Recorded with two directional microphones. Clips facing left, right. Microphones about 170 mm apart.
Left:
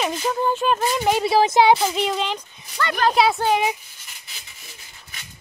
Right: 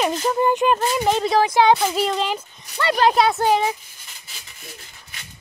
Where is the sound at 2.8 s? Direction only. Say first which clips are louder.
Right 3 dB; 25° right (ahead or behind).